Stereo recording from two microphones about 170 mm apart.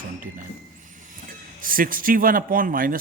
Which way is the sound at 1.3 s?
55° right (ahead or behind).